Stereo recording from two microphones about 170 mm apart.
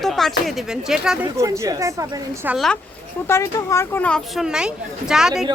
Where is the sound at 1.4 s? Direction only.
20° right (ahead or behind).